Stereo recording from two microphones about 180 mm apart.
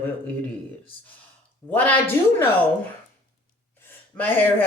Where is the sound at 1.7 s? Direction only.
10° left (ahead or behind).